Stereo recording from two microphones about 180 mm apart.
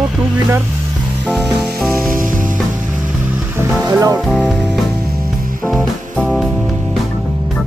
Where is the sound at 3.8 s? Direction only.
20° right (ahead or behind).